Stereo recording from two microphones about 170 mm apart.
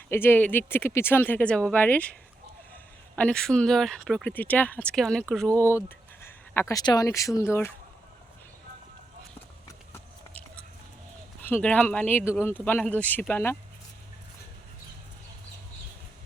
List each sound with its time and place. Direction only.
0.1 s speech: 15° left (ahead or behind)
3.2 s speech: 5° left (ahead or behind)
9.6 s a sound: 15° left (ahead or behind)
11.4 s speech: 10° left (ahead or behind)